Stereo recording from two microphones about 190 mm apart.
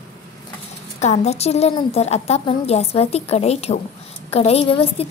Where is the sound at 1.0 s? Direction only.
35° left (ahead or behind).